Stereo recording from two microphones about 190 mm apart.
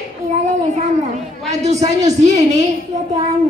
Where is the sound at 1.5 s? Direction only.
35° right (ahead or behind).